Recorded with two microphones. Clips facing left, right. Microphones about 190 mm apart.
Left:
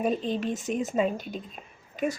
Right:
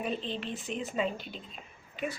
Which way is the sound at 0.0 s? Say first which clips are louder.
Left 7 dB; 45° left (ahead or behind).